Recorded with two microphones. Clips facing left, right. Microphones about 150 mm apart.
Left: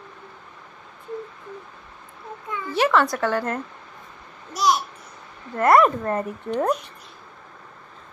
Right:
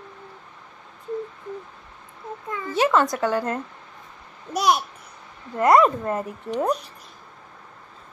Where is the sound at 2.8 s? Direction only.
20° right (ahead or behind).